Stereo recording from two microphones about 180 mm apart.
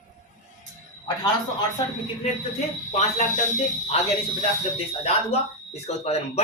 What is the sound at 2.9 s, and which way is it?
Speech, 40° left (ahead or behind).